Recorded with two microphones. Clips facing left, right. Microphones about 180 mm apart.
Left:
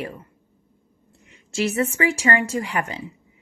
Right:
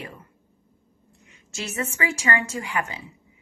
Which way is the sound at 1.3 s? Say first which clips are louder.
Left 11 dB; 35° left (ahead or behind).